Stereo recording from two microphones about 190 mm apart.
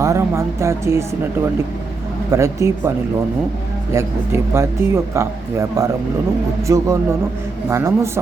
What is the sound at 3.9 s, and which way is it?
Speech, 15° right (ahead or behind).